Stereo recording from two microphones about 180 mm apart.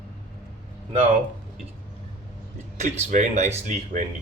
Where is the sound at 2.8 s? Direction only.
40° right (ahead or behind).